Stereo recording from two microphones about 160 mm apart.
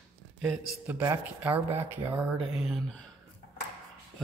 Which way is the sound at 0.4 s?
5° right (ahead or behind).